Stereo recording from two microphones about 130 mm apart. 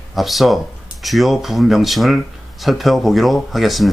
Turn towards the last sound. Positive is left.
turn(degrees=0)  # may be behind; listen again after turning